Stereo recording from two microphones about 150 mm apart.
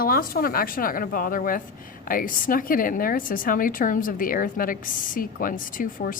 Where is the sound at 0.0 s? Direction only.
80° left.